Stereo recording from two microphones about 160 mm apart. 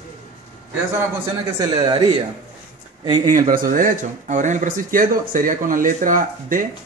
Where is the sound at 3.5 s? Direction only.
60° right (ahead or behind).